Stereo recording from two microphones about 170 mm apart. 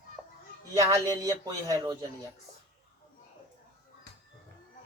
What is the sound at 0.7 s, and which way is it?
A woman's voice, 20° right (ahead or behind).